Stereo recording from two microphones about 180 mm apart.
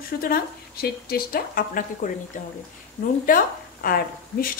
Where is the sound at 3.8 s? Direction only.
55° left (ahead or behind).